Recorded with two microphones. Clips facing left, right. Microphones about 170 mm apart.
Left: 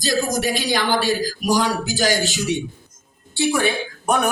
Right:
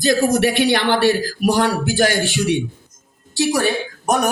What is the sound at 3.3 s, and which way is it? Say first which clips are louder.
Speech: right 2 dB; 40° right (ahead or behind).